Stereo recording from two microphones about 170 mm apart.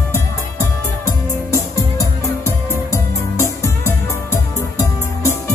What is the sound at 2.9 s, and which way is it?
Music, 15° left (ahead or behind).